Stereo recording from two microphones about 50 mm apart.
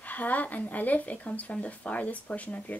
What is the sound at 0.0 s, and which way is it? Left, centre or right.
Speech, left.